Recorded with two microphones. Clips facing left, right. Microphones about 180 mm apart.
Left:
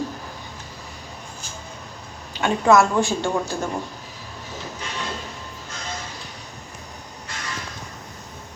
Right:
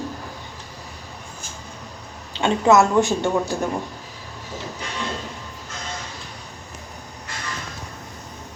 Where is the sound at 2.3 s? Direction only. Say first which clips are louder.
Right 1 dB; 25° right (ahead or behind).